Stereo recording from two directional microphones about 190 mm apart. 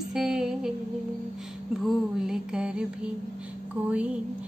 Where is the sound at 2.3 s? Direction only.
5° right (ahead or behind).